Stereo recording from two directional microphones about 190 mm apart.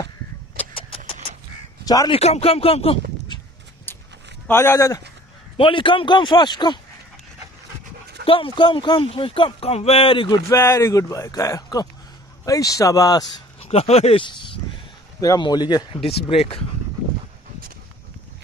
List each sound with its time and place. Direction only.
1.9 s speech: 20° left (ahead or behind)
2.1 s speech: 35° left (ahead or behind)
3.9 s a sound: 10° left (ahead or behind)
4.5 s speech: 15° left (ahead or behind)
5.6 s speech: 25° left (ahead or behind)
8.3 s speech: 25° left (ahead or behind)
13.6 s speech: 30° left (ahead or behind)